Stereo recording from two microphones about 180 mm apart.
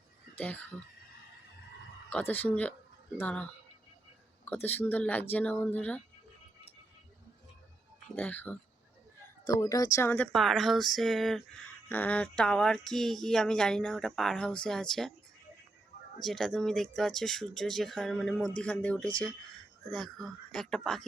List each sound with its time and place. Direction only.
0.3 s speech: 10° left (ahead or behind)
2.0 s speech: 10° left (ahead or behind)
8.1 s speech: 10° left (ahead or behind)
10.3 s speech: centre (ahead or behind)
16.2 s speech: centre (ahead or behind)